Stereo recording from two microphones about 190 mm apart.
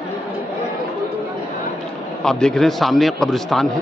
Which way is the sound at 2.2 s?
5° left (ahead or behind).